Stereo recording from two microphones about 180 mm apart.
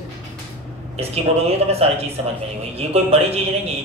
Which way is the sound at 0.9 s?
35° right (ahead or behind).